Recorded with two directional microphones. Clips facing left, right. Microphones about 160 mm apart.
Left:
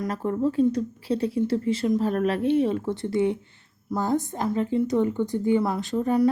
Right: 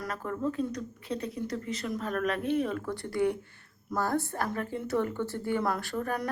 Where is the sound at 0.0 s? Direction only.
30° left (ahead or behind).